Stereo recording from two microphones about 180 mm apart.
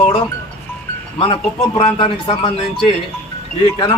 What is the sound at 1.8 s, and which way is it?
Speech, 30° left (ahead or behind).